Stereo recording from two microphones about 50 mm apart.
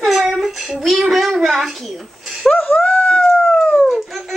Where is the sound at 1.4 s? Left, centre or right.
Centre.